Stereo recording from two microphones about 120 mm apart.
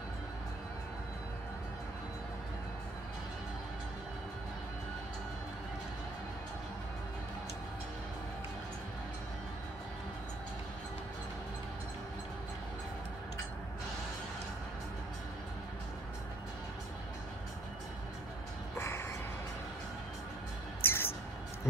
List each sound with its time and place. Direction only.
18.8 s music: 20° left (ahead or behind)
20.8 s music: 20° left (ahead or behind)